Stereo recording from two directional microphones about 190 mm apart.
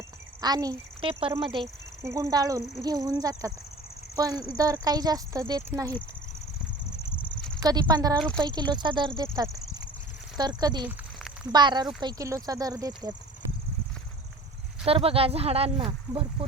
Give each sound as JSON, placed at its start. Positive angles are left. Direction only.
{"t": 0.4, "sound": "speech", "side_deg": -20}
{"t": 2.0, "sound": "speech", "side_deg": -15}
{"t": 7.1, "sound": "a sound", "side_deg": 5}
{"t": 7.6, "sound": "speech", "side_deg": -20}
{"t": 14.8, "sound": "speech", "side_deg": -30}